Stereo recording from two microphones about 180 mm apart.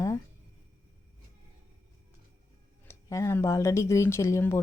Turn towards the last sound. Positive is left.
turn(degrees=15)  # may be behind; listen again after turning